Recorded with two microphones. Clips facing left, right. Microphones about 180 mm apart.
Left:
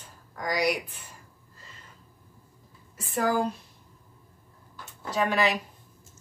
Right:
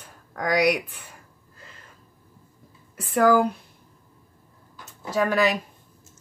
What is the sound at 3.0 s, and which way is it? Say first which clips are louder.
Speech: right 7 dB; 60° right (ahead or behind).